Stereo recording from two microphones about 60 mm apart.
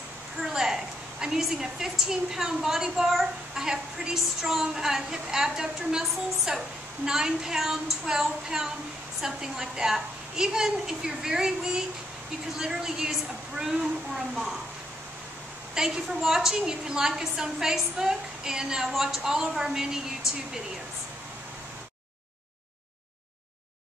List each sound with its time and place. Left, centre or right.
0.4 s a sound: centre
1.2 s a woman's voice: centre
15.7 s a woman's voice: centre